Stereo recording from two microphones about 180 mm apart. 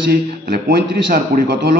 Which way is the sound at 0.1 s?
60° right (ahead or behind).